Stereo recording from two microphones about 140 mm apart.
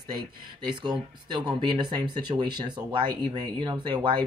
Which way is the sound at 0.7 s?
35° right (ahead or behind).